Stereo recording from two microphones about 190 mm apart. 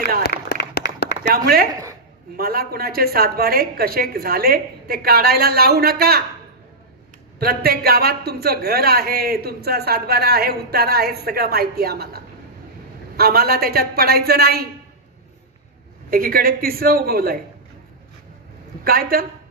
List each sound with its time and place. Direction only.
0.2 s a sound: 60° left (ahead or behind)
1.3 s a woman's voice: 50° right (ahead or behind)
7.3 s a woman's voice: 55° right (ahead or behind)
16.1 s a woman's voice: 50° right (ahead or behind)
18.9 s a woman's voice: 50° right (ahead or behind)